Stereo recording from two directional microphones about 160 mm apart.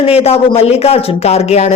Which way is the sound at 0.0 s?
40° left (ahead or behind).